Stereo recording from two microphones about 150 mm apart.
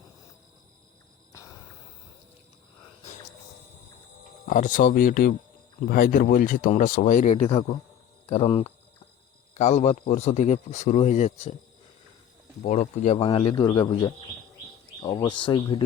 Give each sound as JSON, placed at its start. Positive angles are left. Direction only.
{"t": 4.4, "sound": "speech", "side_deg": 60}
{"t": 7.4, "sound": "speech", "side_deg": 40}
{"t": 12.6, "sound": "speech", "side_deg": 50}
{"t": 13.1, "sound": "a man's voice", "side_deg": 35}